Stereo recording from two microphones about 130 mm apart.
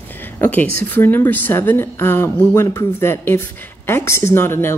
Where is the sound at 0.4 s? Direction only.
15° left (ahead or behind).